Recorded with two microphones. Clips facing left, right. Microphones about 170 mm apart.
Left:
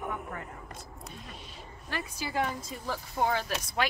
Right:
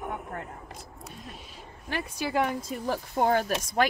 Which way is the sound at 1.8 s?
60° right (ahead or behind).